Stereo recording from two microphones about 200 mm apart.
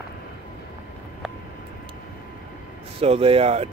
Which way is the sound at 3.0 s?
30° right (ahead or behind).